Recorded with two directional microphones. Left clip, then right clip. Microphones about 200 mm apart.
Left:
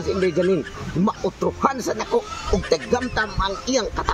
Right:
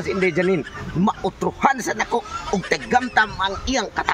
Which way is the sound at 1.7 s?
25° right (ahead or behind).